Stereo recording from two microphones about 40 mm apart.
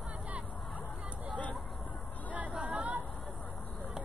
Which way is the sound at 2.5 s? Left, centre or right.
Right.